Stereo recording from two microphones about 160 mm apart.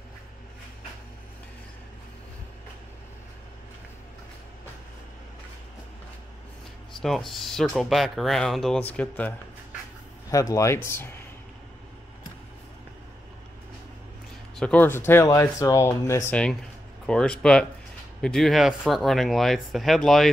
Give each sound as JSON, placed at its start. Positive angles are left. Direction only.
{"t": 7.0, "sound": "speech", "side_deg": 0}
{"t": 10.3, "sound": "speech", "side_deg": 20}
{"t": 14.6, "sound": "speech", "side_deg": 10}